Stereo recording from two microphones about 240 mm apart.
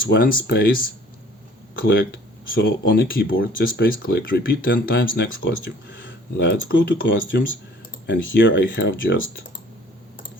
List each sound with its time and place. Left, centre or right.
0.1 s speech: left
2.6 s speech: left